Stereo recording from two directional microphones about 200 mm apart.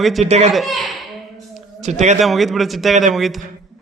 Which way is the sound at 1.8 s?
35° right (ahead or behind).